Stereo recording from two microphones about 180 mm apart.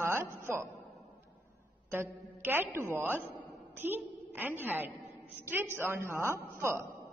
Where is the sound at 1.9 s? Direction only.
10° right (ahead or behind).